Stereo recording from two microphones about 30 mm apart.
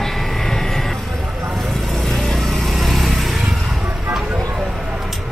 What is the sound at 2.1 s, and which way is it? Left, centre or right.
Vehicle, centre.